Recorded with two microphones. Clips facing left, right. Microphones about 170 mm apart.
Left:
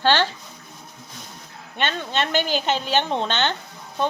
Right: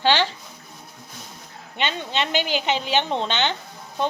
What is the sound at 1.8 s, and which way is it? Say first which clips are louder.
Speech: left 1 dB; 15° right (ahead or behind).